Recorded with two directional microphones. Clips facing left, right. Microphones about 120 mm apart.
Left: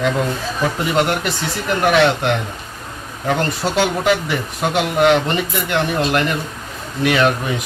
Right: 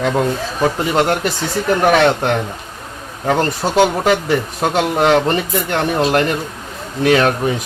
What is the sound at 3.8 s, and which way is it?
Speech, 40° right (ahead or behind).